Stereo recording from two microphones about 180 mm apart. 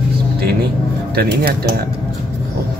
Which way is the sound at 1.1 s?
60° right (ahead or behind).